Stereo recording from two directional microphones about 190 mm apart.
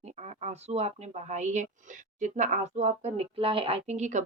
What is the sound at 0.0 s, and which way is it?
Speech, 35° right (ahead or behind).